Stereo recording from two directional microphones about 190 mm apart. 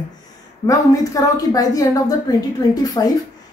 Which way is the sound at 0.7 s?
20° left (ahead or behind).